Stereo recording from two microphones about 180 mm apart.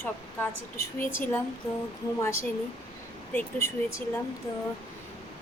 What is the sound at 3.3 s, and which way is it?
Speech, 10° left (ahead or behind).